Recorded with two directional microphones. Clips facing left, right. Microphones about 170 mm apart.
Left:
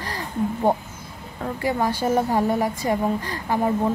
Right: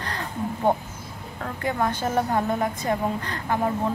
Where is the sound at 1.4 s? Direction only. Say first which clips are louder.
Left 3 dB; 10° left (ahead or behind).